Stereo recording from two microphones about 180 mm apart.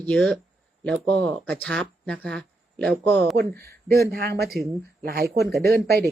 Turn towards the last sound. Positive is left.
turn(degrees=-60)  # may be behind; listen again after turning